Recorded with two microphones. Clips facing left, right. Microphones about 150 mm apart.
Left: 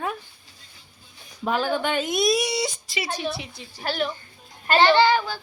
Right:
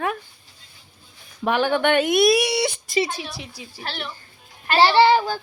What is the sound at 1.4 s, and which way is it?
Speech, 70° right (ahead or behind).